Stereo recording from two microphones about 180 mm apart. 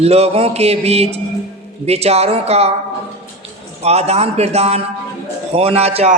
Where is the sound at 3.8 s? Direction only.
35° right (ahead or behind).